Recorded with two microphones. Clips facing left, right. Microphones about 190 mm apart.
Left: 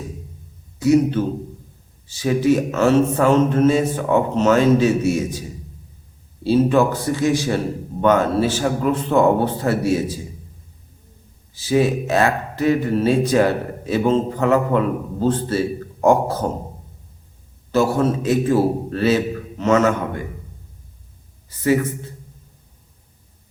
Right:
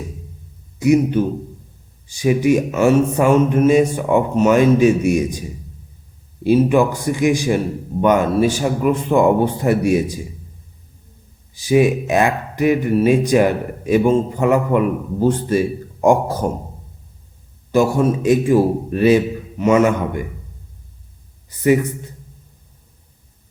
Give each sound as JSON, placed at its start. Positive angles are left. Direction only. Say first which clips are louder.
{"t": 0.8, "sound": "speech", "louder": "right 1 dB", "side_deg": -15}
{"t": 11.5, "sound": "speech", "louder": "right 3 dB", "side_deg": -15}
{"t": 17.7, "sound": "speech", "louder": "right 2 dB", "side_deg": -15}
{"t": 21.5, "sound": "speech", "louder": "right 3 dB", "side_deg": -15}